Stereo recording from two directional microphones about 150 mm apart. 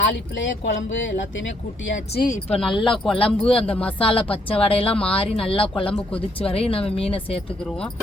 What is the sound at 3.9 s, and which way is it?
Speech, 40° left (ahead or behind).